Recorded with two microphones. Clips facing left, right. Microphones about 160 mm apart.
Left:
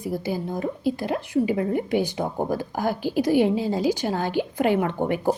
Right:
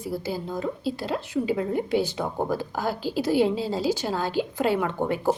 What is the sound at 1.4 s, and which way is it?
Speech, 50° left (ahead or behind).